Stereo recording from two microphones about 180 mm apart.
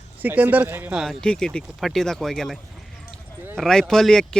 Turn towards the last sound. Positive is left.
turn(degrees=5)  # may be behind; listen again after turning